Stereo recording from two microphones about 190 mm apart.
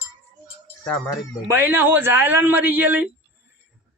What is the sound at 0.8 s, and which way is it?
Speech, 5° left (ahead or behind).